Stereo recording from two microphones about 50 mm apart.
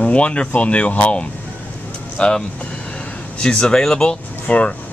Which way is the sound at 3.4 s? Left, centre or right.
Centre.